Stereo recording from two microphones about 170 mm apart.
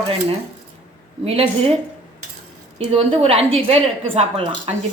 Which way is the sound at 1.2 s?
35° right (ahead or behind).